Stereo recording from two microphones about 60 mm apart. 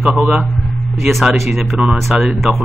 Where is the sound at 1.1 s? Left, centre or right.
Centre.